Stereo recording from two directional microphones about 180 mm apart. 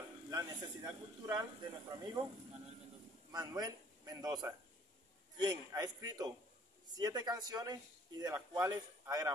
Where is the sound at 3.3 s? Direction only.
20° right (ahead or behind).